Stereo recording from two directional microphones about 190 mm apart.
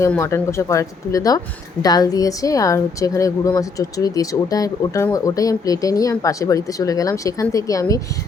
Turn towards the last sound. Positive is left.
turn(degrees=15)  # may be behind; listen again after turning